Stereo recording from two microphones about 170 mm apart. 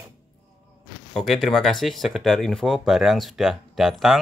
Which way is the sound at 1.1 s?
Centre (ahead or behind).